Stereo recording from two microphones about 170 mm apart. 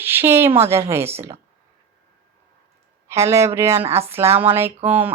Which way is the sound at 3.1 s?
15° right (ahead or behind).